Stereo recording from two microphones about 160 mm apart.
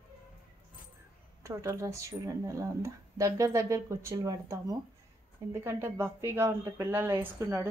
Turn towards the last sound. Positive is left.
turn(degrees=-15)  # may be behind; listen again after turning